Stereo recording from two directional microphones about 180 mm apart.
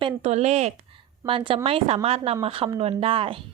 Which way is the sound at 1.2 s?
30° right (ahead or behind).